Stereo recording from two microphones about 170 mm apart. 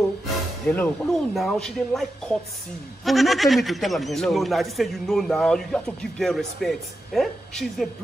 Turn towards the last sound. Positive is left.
turn(degrees=0)  # may be behind; listen again after turning